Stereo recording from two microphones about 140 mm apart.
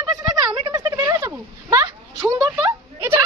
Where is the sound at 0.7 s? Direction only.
20° right (ahead or behind).